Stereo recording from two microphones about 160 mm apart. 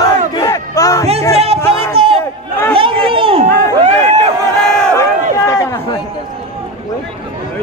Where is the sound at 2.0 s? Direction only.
35° right (ahead or behind).